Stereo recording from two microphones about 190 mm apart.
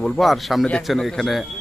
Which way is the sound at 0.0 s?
Centre (ahead or behind).